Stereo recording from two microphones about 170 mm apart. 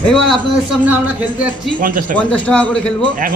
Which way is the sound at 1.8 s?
50° right (ahead or behind).